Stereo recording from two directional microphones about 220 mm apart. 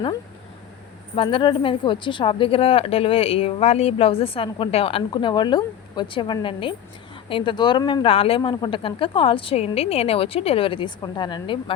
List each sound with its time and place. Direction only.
1.1 s speech: 25° left (ahead or behind)